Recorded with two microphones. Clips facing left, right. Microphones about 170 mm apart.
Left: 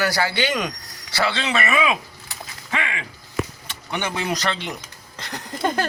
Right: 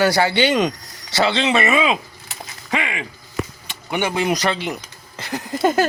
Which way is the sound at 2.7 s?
15° right (ahead or behind).